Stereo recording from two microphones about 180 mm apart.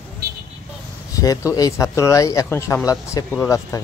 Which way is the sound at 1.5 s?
20° left (ahead or behind).